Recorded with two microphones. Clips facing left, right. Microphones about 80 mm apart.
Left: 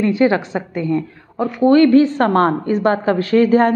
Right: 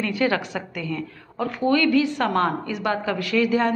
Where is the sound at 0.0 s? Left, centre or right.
Left.